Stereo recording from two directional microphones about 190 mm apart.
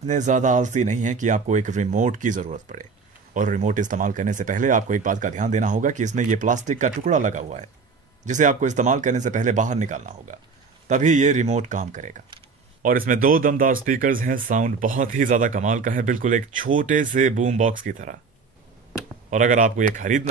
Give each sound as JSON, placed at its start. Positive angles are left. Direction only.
{"t": 0.0, "sound": "speech", "side_deg": -40}
{"t": 19.3, "sound": "speech", "side_deg": -40}